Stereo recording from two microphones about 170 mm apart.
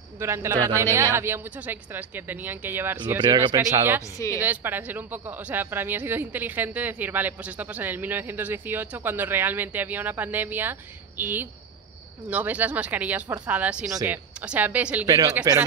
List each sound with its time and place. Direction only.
0.2 s speech: 15° right (ahead or behind)
3.2 s speech: 25° right (ahead or behind)